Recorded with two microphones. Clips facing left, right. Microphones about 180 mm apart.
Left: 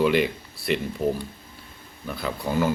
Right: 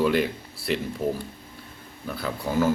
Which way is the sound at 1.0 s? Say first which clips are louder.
Left 3 dB; 20° left (ahead or behind).